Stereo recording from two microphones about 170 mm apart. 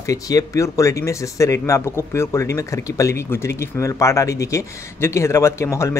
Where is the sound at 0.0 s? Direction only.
20° left (ahead or behind).